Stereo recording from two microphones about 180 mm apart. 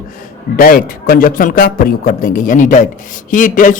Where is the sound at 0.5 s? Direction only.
50° left (ahead or behind).